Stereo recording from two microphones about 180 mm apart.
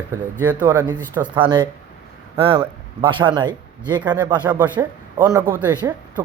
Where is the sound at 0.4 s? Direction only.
10° right (ahead or behind).